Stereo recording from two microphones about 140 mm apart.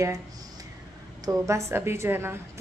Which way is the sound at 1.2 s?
25° right (ahead or behind).